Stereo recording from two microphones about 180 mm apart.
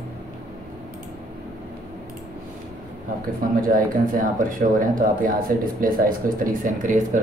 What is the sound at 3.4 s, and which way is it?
Speech, 50° right (ahead or behind).